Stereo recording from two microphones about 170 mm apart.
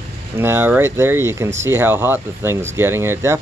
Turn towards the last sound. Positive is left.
turn(degrees=-15)  # may be behind; listen again after turning